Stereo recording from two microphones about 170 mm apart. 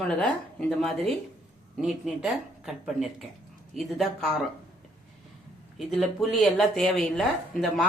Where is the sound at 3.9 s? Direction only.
Centre (ahead or behind).